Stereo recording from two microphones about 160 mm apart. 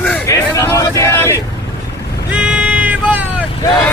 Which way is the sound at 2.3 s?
5° right (ahead or behind).